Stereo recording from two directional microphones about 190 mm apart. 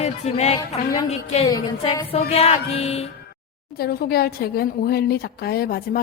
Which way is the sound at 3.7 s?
55° left (ahead or behind).